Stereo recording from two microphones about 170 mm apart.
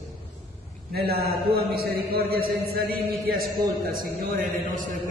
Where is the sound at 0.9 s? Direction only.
65° right (ahead or behind).